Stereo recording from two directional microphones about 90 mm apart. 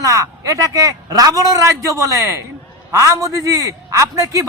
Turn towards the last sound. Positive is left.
turn(degrees=-35)  # may be behind; listen again after turning